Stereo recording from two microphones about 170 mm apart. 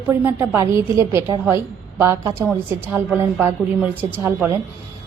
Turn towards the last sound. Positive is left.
turn(degrees=-10)  # may be behind; listen again after turning